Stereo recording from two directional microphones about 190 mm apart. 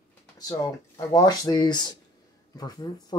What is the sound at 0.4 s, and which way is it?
Speech, 20° left (ahead or behind).